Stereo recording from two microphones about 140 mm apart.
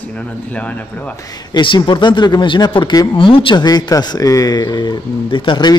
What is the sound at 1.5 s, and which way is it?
Speech, 35° left (ahead or behind).